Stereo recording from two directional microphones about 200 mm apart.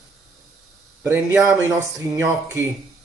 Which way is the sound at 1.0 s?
10° right (ahead or behind).